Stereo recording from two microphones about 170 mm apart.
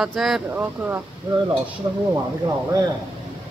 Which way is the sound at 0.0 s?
Centre (ahead or behind).